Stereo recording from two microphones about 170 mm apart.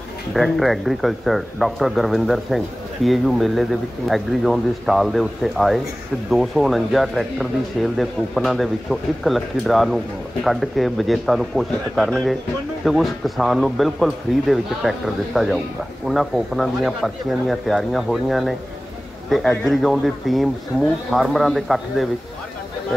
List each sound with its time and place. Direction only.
0.3 s speech: centre (ahead or behind)